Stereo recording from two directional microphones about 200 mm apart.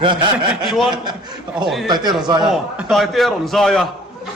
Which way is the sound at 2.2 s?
20° right (ahead or behind).